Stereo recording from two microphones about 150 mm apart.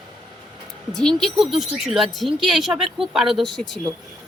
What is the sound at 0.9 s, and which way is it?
A woman's voice, centre (ahead or behind).